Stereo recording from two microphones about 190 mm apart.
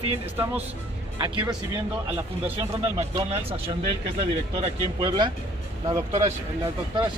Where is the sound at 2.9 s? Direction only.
35° right (ahead or behind).